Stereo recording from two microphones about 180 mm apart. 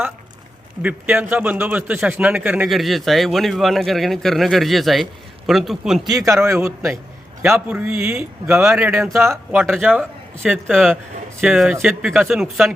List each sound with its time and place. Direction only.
0.8 s a man's voice: 10° right (ahead or behind)
6.1 s a man's voice: 15° right (ahead or behind); by 12.7 s centre (ahead or behind)